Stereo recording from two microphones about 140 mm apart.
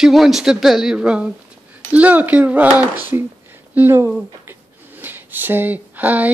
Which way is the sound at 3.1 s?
20° right (ahead or behind).